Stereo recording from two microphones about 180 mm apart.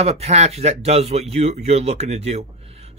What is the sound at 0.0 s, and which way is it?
Speech, 35° right (ahead or behind).